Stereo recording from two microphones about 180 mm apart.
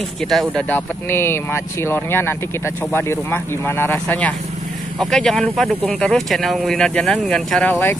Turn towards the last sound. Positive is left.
turn(degrees=10)  # may be behind; listen again after turning